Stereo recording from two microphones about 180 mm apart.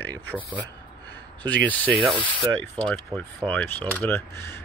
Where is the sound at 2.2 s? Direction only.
25° left (ahead or behind).